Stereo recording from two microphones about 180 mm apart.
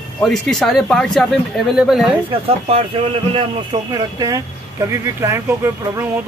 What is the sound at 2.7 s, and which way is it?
Speech, 35° right (ahead or behind).